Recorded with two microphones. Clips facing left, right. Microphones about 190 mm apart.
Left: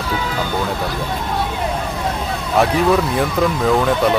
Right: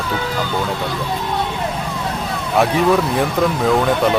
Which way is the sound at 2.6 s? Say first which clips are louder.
Even; centre (ahead or behind).